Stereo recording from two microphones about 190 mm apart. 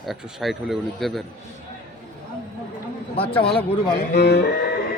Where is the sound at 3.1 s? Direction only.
30° left (ahead or behind).